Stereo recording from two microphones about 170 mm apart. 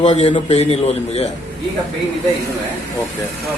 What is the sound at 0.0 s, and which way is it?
A man's voice, 40° left (ahead or behind).